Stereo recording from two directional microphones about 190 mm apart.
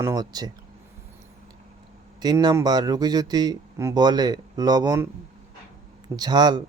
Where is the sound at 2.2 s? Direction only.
20° right (ahead or behind).